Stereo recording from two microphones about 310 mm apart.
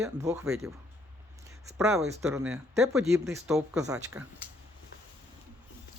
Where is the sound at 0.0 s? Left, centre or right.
Centre.